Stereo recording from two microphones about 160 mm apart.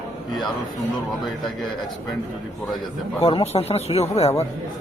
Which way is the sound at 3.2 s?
40° left (ahead or behind).